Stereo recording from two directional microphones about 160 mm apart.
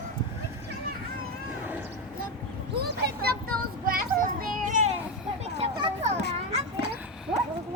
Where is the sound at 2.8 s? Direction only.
75° right (ahead or behind); by 4.9 s 55° right (ahead or behind).